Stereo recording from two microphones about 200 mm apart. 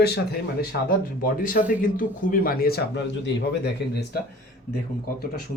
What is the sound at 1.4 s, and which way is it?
A man's voice, 40° left (ahead or behind).